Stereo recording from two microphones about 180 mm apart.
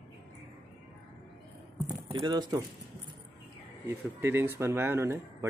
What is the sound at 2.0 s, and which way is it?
Speech, 25° right (ahead or behind).